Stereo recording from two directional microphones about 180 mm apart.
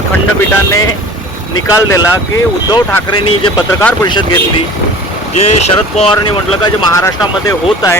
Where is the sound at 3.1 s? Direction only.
25° left (ahead or behind).